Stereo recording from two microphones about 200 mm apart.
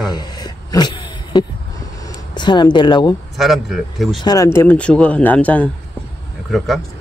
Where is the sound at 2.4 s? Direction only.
20° left (ahead or behind).